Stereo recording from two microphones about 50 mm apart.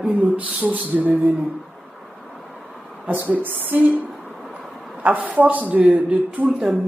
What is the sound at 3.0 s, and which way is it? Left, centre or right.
A man's voice, right.